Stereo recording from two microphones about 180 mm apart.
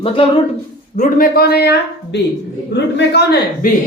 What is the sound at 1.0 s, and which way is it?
A man's voice, 50° left (ahead or behind).